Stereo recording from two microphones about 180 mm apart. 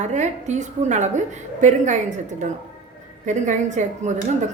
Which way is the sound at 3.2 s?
40° right (ahead or behind).